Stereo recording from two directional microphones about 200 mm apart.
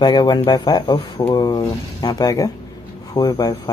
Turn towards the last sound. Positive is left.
turn(degrees=20)  # may be behind; listen again after turning